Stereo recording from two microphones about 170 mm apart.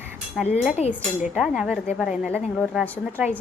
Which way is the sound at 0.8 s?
40° left (ahead or behind).